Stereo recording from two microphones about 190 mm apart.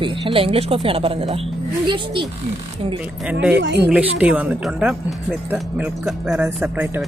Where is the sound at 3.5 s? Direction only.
65° right (ahead or behind).